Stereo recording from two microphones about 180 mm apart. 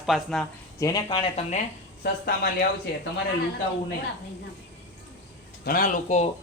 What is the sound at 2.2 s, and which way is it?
Speech, 65° left (ahead or behind).